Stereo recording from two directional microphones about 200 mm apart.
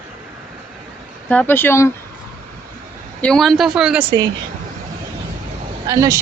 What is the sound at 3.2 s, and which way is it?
Speech, 5° left (ahead or behind).